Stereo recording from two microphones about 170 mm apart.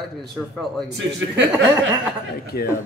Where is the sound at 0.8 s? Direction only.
90° right.